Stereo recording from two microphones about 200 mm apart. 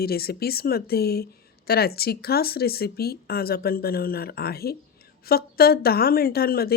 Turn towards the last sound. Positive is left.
turn(degrees=50)  # may be behind; listen again after turning